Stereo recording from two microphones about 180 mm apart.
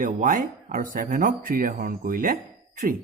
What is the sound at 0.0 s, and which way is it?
Speech, 45° right (ahead or behind).